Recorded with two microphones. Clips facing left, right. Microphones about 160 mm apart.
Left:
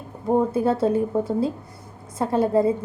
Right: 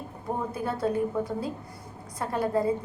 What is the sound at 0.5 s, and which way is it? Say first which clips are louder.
A woman's voice: left 8 dB; 25° left (ahead or behind).